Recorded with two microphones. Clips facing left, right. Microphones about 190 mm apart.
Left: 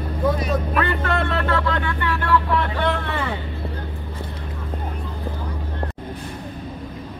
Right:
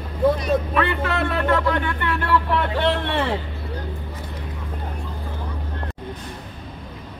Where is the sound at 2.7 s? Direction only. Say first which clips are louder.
Right 2 dB; 30° right (ahead or behind).